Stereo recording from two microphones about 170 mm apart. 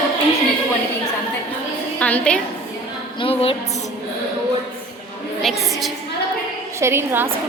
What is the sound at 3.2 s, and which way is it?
Speech, 35° left (ahead or behind).